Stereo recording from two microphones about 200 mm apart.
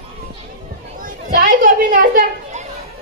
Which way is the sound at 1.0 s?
45° right (ahead or behind).